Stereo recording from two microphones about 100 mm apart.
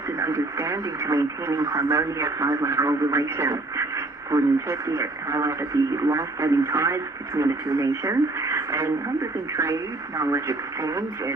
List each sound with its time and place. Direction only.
0.2 s speech: 30° right (ahead or behind)